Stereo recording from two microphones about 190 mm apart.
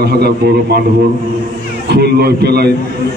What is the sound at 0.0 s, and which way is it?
Speech, 55° right (ahead or behind).